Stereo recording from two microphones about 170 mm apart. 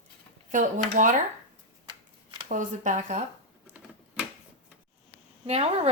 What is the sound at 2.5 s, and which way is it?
Speech, 50° right (ahead or behind).